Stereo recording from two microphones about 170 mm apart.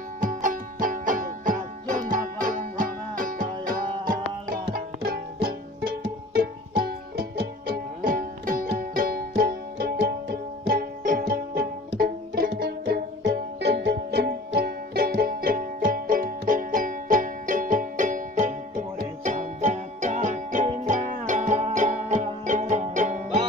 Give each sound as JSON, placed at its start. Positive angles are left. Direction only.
{"t": 0.2, "sound": "music", "side_deg": -50}